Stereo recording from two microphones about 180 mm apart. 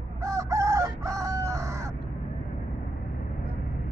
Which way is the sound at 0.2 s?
15° right (ahead or behind).